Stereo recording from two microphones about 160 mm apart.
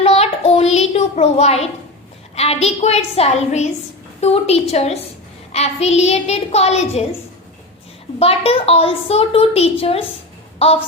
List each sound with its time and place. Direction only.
0.0 s a sound: 40° left (ahead or behind)
2.3 s a child's voice: 40° left (ahead or behind)
8.2 s a child's voice: 35° left (ahead or behind)